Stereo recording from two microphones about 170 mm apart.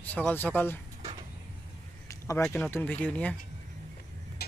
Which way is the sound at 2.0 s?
20° left (ahead or behind).